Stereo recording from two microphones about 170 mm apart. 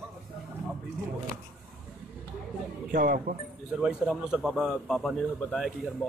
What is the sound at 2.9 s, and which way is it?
Speech, 55° right (ahead or behind).